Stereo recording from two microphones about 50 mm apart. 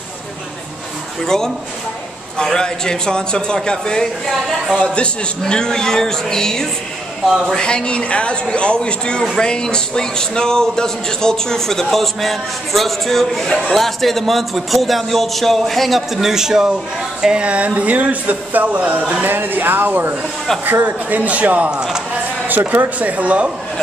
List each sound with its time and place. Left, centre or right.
1.2 s a man's voice: centre; by 19.2 s right
19.2 s speech: right